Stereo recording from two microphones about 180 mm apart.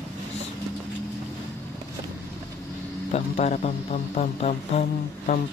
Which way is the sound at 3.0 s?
40° left (ahead or behind).